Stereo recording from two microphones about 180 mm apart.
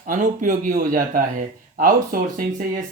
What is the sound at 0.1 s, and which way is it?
Speech, 45° right (ahead or behind).